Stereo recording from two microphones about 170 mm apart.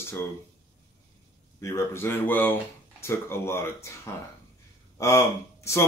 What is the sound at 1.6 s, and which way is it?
Speech, 15° left (ahead or behind).